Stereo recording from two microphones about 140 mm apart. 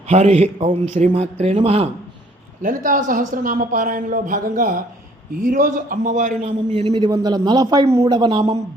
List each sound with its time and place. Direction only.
0.1 s a man's voice: 50° right (ahead or behind)
2.6 s speech: 75° right (ahead or behind)
6.7 s a man's voice: 35° right (ahead or behind)
8.1 s a man's voice: 35° right (ahead or behind)